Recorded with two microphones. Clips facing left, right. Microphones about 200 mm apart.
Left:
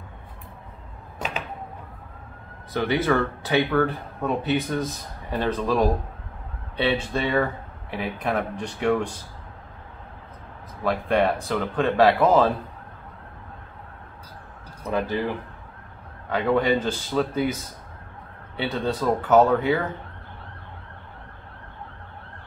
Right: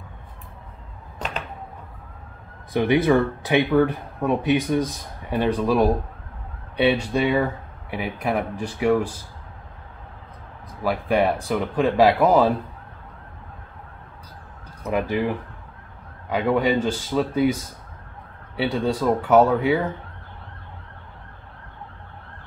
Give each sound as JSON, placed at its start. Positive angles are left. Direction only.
{"t": 2.7, "sound": "speech", "side_deg": -15}
{"t": 10.8, "sound": "speech", "side_deg": -5}
{"t": 14.9, "sound": "speech", "side_deg": -15}
{"t": 16.3, "sound": "speech", "side_deg": -10}
{"t": 18.6, "sound": "speech", "side_deg": -10}